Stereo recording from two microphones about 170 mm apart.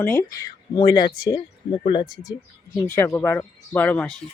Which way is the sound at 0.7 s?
25° left (ahead or behind).